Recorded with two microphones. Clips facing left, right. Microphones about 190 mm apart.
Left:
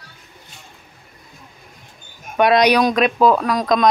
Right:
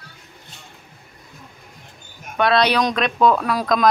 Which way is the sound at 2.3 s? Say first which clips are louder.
Left 4 dB; 15° left (ahead or behind).